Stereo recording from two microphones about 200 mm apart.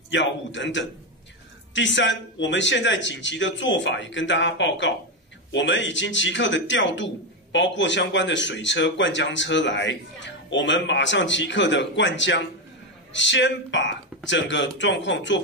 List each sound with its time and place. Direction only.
0.1 s speech: 65° left (ahead or behind)